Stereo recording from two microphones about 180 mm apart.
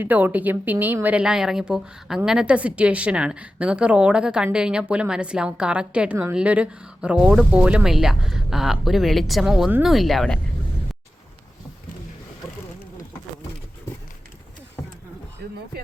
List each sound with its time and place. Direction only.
0.0 s speech: 10° right (ahead or behind)
15.4 s music: 65° right (ahead or behind)